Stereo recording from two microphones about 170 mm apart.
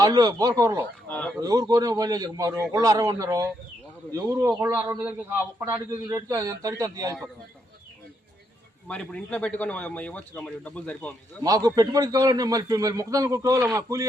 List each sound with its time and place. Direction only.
0.0 s a man's voice: 25° right (ahead or behind)
1.0 s a sound: 10° left (ahead or behind)
1.4 s a man's voice: 20° right (ahead or behind)
8.9 s speech: 5° left (ahead or behind)
11.4 s a man's voice: 20° right (ahead or behind)